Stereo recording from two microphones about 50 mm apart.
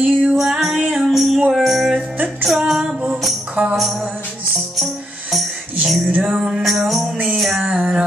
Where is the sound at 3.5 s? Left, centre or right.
Right.